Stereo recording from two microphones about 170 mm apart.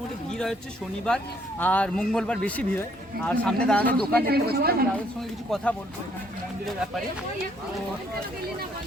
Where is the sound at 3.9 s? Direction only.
65° right (ahead or behind).